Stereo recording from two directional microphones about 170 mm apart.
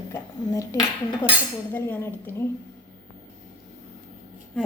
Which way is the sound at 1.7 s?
15° left (ahead or behind).